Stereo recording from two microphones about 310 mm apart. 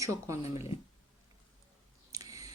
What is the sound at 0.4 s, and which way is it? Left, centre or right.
Speech, centre.